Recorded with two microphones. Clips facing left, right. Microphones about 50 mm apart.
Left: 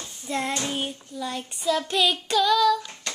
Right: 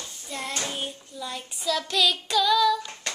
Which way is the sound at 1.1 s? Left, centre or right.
Centre.